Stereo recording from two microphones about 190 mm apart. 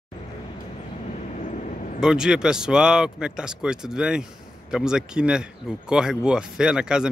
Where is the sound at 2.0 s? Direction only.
5° right (ahead or behind).